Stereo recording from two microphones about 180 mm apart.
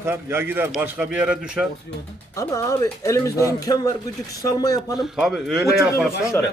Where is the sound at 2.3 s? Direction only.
20° left (ahead or behind).